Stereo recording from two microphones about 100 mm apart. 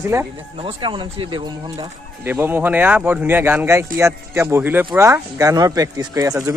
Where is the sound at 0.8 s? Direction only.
55° right (ahead or behind).